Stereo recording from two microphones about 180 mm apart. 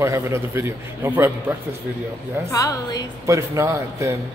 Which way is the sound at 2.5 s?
20° left (ahead or behind).